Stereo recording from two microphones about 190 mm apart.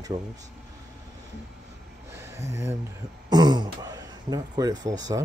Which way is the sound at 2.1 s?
15° right (ahead or behind).